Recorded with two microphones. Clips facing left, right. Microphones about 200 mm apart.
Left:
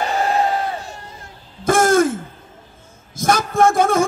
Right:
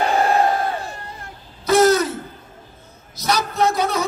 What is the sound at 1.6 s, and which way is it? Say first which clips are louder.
Throat clearing: even; 50° left (ahead or behind).